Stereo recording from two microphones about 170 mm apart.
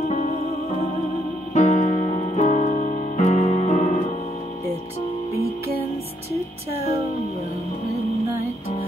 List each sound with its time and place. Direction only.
0.1 s music: 40° left (ahead or behind)
1.5 s music: 45° left (ahead or behind)